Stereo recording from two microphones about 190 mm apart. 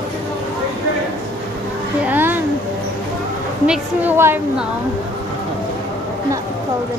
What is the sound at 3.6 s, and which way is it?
A woman's voice, 5° right (ahead or behind).